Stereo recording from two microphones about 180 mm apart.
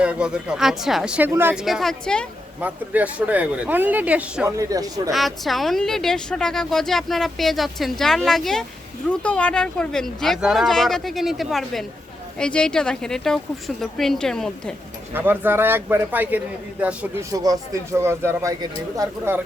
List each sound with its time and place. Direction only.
0.0 s speech: 5° right (ahead or behind)
1.6 s speech: centre (ahead or behind)
2.6 s speech: 10° right (ahead or behind)
5.1 s speech: centre (ahead or behind)
15.1 s speech: 10° right (ahead or behind)
17.3 s speech: 20° right (ahead or behind)